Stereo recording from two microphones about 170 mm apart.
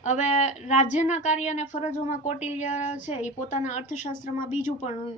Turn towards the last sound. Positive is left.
turn(degrees=45)  # may be behind; listen again after turning